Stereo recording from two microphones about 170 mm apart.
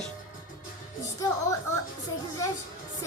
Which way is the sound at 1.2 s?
20° left (ahead or behind).